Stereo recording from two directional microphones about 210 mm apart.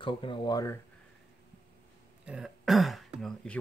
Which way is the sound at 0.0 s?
25° left (ahead or behind).